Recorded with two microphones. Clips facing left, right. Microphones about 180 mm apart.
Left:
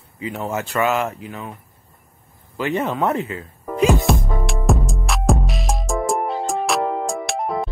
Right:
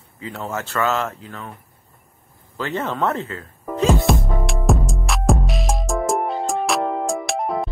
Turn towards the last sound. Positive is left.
turn(degrees=0)  # may be behind; listen again after turning